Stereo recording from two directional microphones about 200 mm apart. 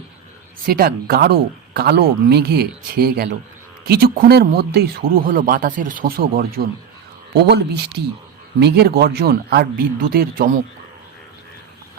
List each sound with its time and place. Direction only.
0.6 s speech: 50° right (ahead or behind)